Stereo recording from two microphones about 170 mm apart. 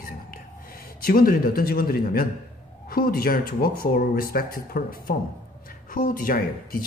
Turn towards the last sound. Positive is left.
turn(degrees=55)  # may be behind; listen again after turning